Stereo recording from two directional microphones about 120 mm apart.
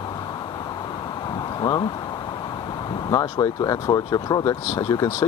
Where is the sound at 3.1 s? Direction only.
30° left (ahead or behind).